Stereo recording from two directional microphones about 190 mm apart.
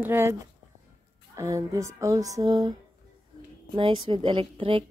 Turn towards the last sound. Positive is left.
turn(degrees=-30)  # may be behind; listen again after turning